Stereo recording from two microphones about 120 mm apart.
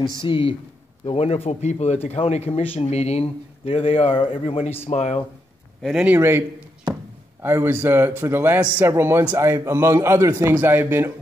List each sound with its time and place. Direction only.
0.2 s speech: 45° left (ahead or behind); by 5.2 s 70° left (ahead or behind)
5.8 s speech: centre (ahead or behind)
6.0 s a man's voice: 20° right (ahead or behind)
7.4 s a man's voice: 20° right (ahead or behind)